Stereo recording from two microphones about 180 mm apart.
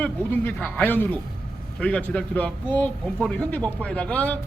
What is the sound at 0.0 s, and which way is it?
Speech, 10° left (ahead or behind).